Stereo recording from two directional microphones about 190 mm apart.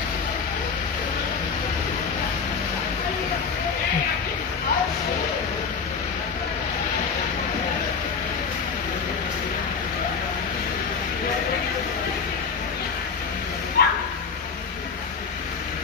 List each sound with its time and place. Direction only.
13.8 s bow-wow: 55° left (ahead or behind)